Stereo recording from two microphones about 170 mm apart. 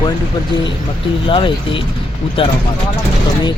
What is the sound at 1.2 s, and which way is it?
Speech, 30° left (ahead or behind).